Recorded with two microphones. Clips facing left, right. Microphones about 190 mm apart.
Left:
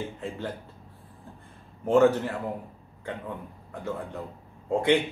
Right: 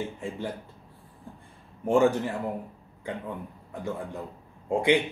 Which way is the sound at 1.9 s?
15° right (ahead or behind).